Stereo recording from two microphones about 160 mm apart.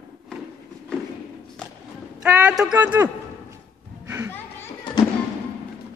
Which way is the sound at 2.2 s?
10° right (ahead or behind).